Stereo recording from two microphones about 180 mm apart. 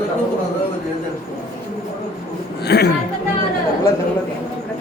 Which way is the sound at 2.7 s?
65° left (ahead or behind).